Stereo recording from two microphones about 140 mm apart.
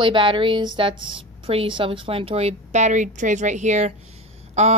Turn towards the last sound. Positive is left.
turn(degrees=-55)  # may be behind; listen again after turning